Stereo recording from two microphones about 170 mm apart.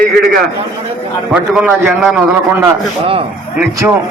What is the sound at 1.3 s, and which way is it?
Speech, 5° right (ahead or behind).